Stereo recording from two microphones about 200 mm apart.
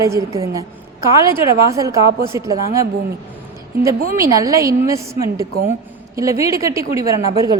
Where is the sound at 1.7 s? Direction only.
15° right (ahead or behind).